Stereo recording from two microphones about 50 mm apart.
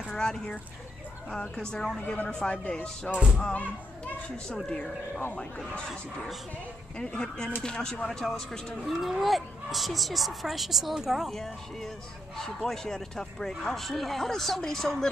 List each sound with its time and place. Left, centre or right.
0.1 s a sound: centre
1.3 s speech: centre
3.1 s speech: right
3.3 s speech: left
4.5 s speech: centre
5.6 s speech: centre
7.0 s speech: centre
11.2 s speech: centre